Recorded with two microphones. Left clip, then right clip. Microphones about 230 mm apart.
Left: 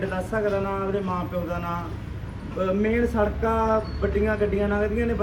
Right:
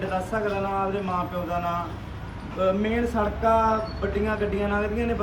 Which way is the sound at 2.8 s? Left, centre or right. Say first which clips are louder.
Left 2 dB; centre.